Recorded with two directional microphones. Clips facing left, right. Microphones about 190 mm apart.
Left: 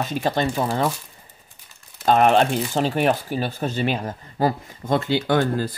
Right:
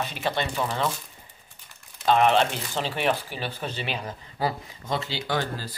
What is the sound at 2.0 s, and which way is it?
Speech, 45° left (ahead or behind).